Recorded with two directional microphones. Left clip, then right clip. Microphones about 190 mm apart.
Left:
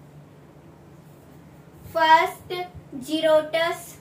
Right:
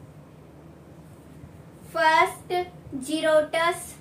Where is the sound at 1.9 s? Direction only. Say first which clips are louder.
Left 3 dB; 15° right (ahead or behind).